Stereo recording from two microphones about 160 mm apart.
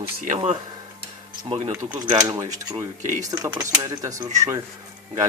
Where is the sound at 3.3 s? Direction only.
20° right (ahead or behind).